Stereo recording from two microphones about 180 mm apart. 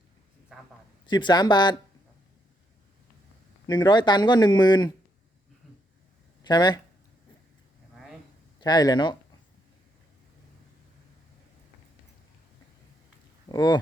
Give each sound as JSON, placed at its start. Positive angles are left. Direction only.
{"t": 0.5, "sound": "a sound", "side_deg": 0}
{"t": 1.0, "sound": "speech", "side_deg": 25}
{"t": 3.7, "sound": "speech", "side_deg": 25}
{"t": 6.4, "sound": "speech", "side_deg": 25}
{"t": 8.6, "sound": "speech", "side_deg": 20}
{"t": 13.5, "sound": "speech", "side_deg": 20}